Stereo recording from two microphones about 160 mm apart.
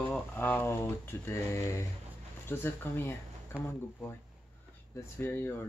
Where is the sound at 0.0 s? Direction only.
10° left (ahead or behind).